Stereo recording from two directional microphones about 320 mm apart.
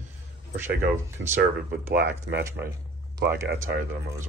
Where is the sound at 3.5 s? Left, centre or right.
Right.